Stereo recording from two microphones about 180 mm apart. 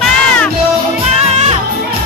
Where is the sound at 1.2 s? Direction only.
35° right (ahead or behind).